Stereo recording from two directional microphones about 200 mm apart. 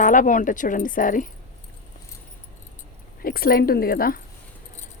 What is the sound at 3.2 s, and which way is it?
Speech, 50° left (ahead or behind).